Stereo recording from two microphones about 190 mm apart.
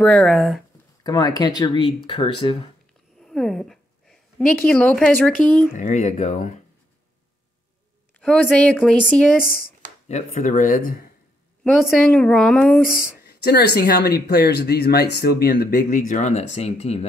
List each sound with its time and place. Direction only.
0.0 s speech: 5° left (ahead or behind)
1.0 s speech: 20° left (ahead or behind)
3.2 s a woman's voice: centre (ahead or behind)
5.8 s speech: 40° left (ahead or behind)
8.2 s speech: 5° left (ahead or behind)
10.0 s speech: 35° left (ahead or behind)
11.6 s speech: centre (ahead or behind)
13.2 s speech: 60° left (ahead or behind); by 17.1 s 35° left (ahead or behind)